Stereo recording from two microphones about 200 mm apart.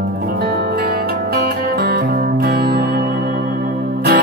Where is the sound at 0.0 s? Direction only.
50° right (ahead or behind).